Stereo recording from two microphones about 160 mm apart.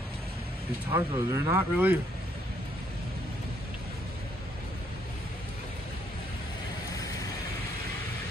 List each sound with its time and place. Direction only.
0.9 s speech: 15° right (ahead or behind)